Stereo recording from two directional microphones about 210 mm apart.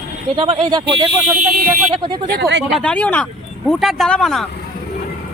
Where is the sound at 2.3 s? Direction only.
50° right (ahead or behind).